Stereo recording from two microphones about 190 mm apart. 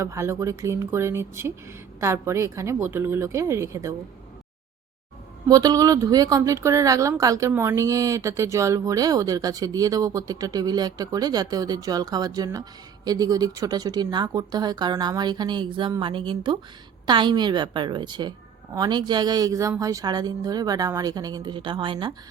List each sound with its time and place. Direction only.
0.0 s speech: 15° right (ahead or behind)
5.5 s a woman's voice: 20° right (ahead or behind)